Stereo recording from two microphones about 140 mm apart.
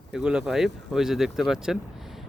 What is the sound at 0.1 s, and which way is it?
Speech, 5° right (ahead or behind).